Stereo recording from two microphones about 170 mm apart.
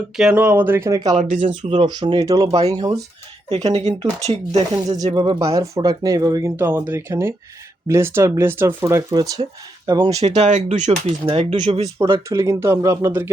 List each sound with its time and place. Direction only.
0.2 s speech: 5° right (ahead or behind)
1.1 s speech: 45° right (ahead or behind)
1.9 s speech: 25° right (ahead or behind)
3.5 s speech: 35° right (ahead or behind)
5.4 s speech: 20° right (ahead or behind)
10.2 s speech: 40° right (ahead or behind)
11.5 s speech: 30° right (ahead or behind)
12.3 s speech: 15° right (ahead or behind)